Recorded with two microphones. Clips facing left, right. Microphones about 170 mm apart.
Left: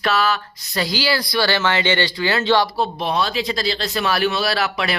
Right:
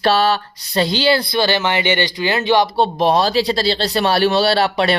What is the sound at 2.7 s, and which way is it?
Speech, 35° right (ahead or behind).